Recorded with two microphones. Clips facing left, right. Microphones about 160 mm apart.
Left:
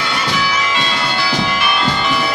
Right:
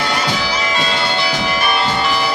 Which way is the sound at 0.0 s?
35° right (ahead or behind).